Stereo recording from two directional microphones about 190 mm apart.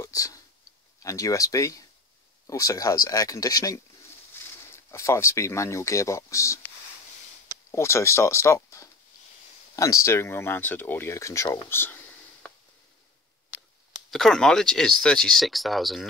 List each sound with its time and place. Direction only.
0.0 s a sound: 20° left (ahead or behind)
0.9 s speech: 15° left (ahead or behind)
4.4 s a sound: 10° left (ahead or behind)
4.9 s speech: 15° left (ahead or behind)
7.7 s speech: 15° left (ahead or behind)
14.1 s speech: 5° left (ahead or behind)